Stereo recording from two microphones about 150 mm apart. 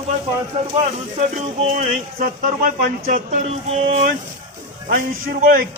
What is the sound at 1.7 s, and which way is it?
Speech, 60° right (ahead or behind).